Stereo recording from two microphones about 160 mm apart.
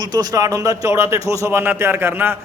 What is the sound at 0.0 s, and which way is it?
A man's voice, 25° right (ahead or behind).